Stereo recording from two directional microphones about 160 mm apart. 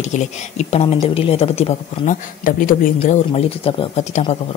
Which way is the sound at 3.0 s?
45° left (ahead or behind).